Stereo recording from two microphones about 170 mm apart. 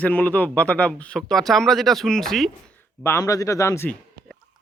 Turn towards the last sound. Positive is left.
turn(degrees=15)  # may be behind; listen again after turning